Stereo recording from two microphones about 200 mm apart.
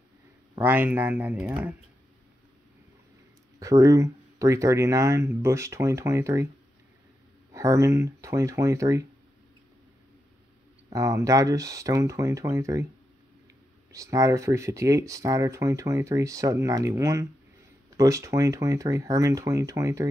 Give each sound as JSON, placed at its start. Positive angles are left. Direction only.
{"t": 0.6, "sound": "speech", "side_deg": -10}
{"t": 3.5, "sound": "speech", "side_deg": -15}
{"t": 7.5, "sound": "speech", "side_deg": -15}
{"t": 10.9, "sound": "speech", "side_deg": -15}
{"t": 13.9, "sound": "speech", "side_deg": -15}